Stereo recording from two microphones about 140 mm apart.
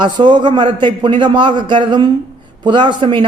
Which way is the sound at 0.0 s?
35° right (ahead or behind).